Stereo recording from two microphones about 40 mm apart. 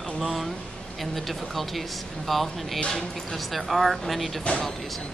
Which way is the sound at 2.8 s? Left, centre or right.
Centre.